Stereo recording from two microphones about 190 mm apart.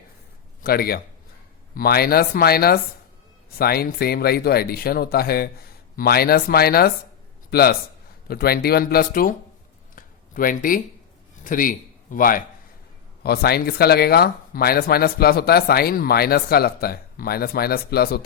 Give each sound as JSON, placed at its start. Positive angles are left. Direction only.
{"t": 0.6, "sound": "a man's voice", "side_deg": 50}
{"t": 9.9, "sound": "a sound", "side_deg": 45}
{"t": 11.4, "sound": "speech", "side_deg": 45}